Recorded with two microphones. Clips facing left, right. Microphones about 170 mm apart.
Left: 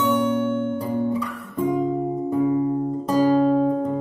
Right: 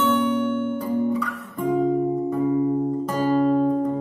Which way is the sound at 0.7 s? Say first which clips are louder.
Right 1 dB; 25° left (ahead or behind).